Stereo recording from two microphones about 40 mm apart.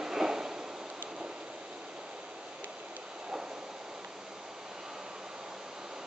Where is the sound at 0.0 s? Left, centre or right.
Centre.